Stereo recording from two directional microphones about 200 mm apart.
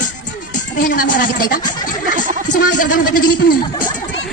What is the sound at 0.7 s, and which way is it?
A woman's voice, 45° left (ahead or behind).